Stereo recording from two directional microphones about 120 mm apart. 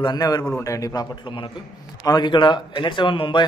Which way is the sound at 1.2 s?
45° left (ahead or behind).